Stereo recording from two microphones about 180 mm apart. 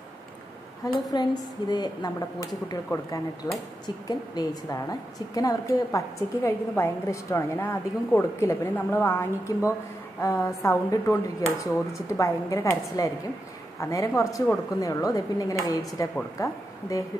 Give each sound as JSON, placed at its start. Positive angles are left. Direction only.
{"t": 1.1, "sound": "a woman's voice", "side_deg": 25}